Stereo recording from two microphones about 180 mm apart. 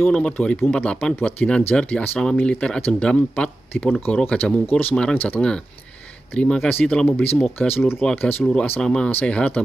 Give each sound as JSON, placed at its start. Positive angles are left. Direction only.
{"t": 0.0, "sound": "speech", "side_deg": 5}